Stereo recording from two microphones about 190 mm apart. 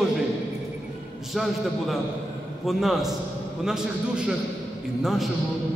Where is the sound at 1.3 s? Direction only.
Centre (ahead or behind).